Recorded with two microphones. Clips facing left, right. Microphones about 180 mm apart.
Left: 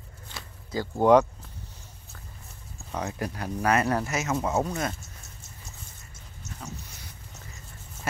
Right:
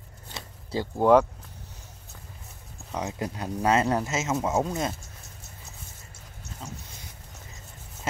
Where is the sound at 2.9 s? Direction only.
20° right (ahead or behind).